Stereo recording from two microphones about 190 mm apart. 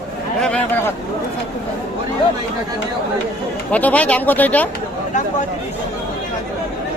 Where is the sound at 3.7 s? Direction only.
5° left (ahead or behind).